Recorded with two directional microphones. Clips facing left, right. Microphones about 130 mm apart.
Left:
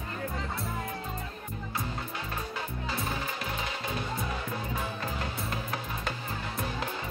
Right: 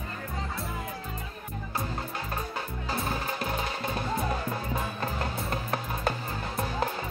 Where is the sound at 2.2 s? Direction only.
40° right (ahead or behind).